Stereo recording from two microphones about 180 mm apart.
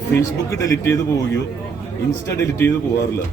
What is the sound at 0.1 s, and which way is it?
A man's voice, 15° left (ahead or behind).